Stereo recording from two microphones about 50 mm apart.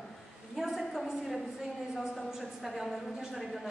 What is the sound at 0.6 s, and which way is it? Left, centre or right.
A woman's voice, centre.